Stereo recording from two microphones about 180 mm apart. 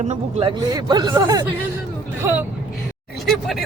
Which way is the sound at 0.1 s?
30° right (ahead or behind).